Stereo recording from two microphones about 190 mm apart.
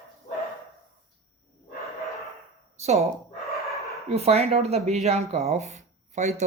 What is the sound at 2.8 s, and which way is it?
Speech, 35° right (ahead or behind).